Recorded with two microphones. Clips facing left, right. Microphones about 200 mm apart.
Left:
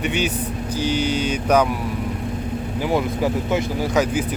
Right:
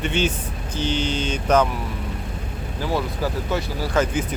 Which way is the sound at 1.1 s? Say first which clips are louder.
Left 1 dB; 10° left (ahead or behind).